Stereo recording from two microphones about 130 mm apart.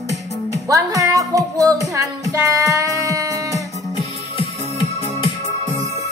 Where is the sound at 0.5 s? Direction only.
25° right (ahead or behind).